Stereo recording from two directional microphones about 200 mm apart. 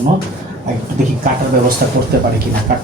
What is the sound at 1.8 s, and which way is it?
Speech, 50° right (ahead or behind).